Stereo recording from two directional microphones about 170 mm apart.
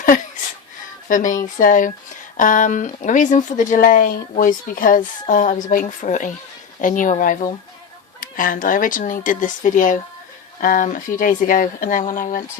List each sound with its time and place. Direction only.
1.0 s speech: 50° left (ahead or behind)